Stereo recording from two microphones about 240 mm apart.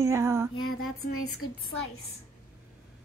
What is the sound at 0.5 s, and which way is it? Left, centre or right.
Speech, left.